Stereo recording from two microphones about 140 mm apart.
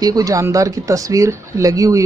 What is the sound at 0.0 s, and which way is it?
Speech, 25° right (ahead or behind).